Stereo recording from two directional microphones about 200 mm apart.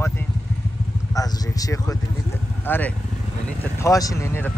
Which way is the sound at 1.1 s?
20° left (ahead or behind).